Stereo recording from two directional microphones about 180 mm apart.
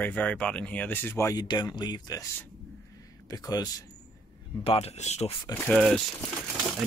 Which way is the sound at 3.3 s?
20° left (ahead or behind).